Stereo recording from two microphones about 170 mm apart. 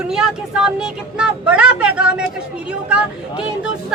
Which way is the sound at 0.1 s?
5° right (ahead or behind).